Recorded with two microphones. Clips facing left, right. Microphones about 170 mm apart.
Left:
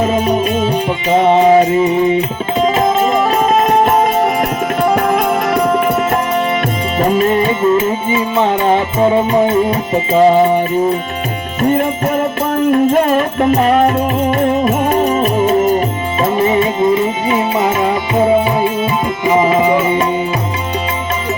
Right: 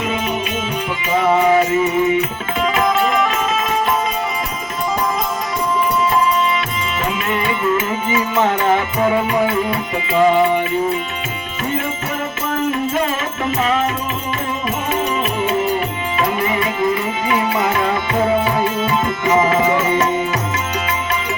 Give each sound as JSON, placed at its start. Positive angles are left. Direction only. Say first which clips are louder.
{"t": 0.0, "sound": "music", "louder": "left 8 dB", "side_deg": 40}
{"t": 7.0, "sound": "music", "louder": "left 10 dB", "side_deg": 40}
{"t": 11.6, "sound": "music", "louder": "left 9 dB", "side_deg": 50}
{"t": 16.2, "sound": "music", "louder": "left 7 dB", "side_deg": 30}